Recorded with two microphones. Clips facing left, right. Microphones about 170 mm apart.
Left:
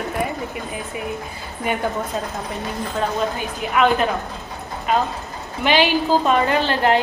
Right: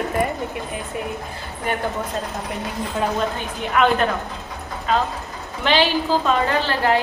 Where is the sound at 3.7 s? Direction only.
5° left (ahead or behind).